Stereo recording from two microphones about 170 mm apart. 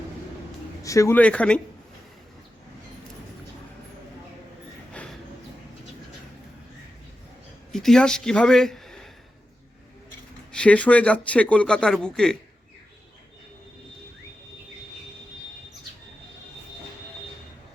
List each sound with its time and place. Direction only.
0.8 s speech: 20° left (ahead or behind)
4.9 s a sound: 5° left (ahead or behind)
7.7 s speech: centre (ahead or behind)
10.5 s speech: 5° left (ahead or behind)